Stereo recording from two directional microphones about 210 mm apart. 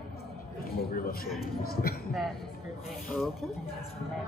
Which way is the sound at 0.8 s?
45° left (ahead or behind).